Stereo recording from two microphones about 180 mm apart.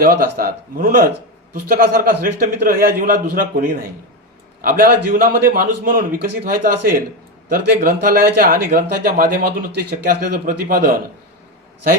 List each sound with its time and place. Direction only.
0.0 s a man's voice: 50° right (ahead or behind)